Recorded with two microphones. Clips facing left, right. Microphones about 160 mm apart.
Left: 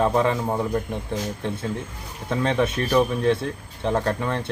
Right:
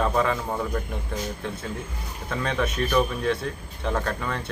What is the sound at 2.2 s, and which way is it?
Speech, 20° left (ahead or behind).